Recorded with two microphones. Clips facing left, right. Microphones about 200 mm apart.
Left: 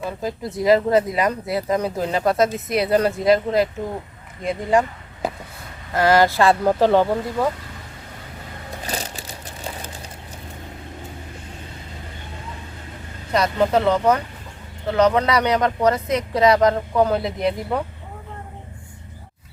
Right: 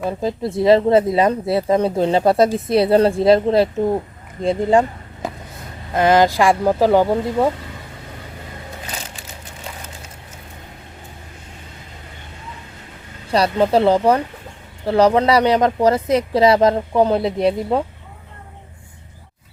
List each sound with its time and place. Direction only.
0.2 s speech: 25° right (ahead or behind)
5.9 s speech: 20° right (ahead or behind)
7.4 s speech: 25° right (ahead or behind)
8.9 s a sound: 35° left (ahead or behind)
13.3 s speech: 30° right (ahead or behind)